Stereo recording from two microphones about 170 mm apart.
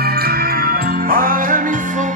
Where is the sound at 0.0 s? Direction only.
65° right (ahead or behind).